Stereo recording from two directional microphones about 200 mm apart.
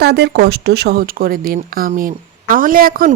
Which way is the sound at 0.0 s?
55° right (ahead or behind).